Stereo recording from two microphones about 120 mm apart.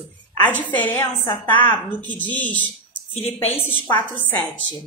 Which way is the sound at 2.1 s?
15° left (ahead or behind).